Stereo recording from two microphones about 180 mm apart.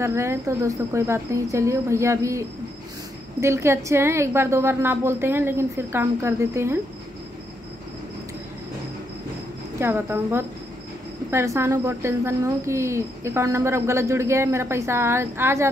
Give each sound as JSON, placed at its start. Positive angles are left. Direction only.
{"t": 0.0, "sound": "a woman's voice", "side_deg": -15}
{"t": 9.8, "sound": "a woman's voice", "side_deg": -15}